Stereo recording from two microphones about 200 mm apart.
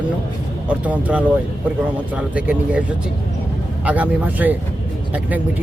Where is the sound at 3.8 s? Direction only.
10° right (ahead or behind).